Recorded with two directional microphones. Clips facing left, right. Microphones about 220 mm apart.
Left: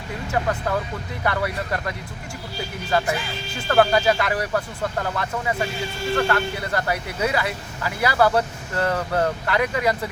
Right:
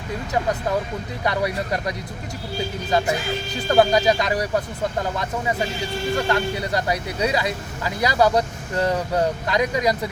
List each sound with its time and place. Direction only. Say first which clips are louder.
1.2 s speech: right 1 dB; 15° right (ahead or behind)